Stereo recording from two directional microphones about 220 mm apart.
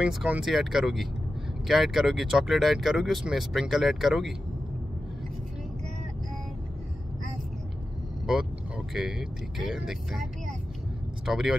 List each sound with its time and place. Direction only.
0.0 s speech: 5° right (ahead or behind)
8.3 s speech: 5° right (ahead or behind)
11.2 s speech: centre (ahead or behind)